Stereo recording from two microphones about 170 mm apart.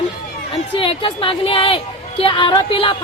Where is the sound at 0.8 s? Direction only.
30° left (ahead or behind).